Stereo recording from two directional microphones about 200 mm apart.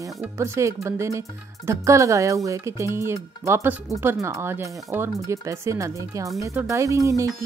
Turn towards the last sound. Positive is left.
turn(degrees=-15)  # may be behind; listen again after turning